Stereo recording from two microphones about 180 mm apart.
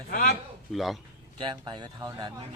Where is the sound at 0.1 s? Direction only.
50° left (ahead or behind).